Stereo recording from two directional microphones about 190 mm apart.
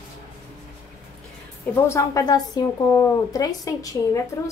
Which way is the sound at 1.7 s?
15° left (ahead or behind).